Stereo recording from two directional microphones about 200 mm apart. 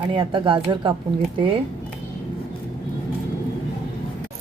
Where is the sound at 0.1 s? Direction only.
25° right (ahead or behind).